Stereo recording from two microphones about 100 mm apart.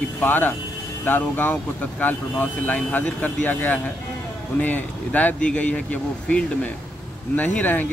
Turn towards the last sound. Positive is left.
turn(degrees=15)  # may be behind; listen again after turning